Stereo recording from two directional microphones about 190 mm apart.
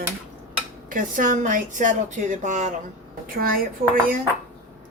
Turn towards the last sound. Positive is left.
turn(degrees=-45)  # may be behind; listen again after turning